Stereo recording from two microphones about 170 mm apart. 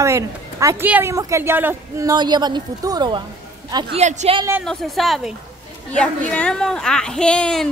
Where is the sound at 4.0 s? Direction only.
40° right (ahead or behind).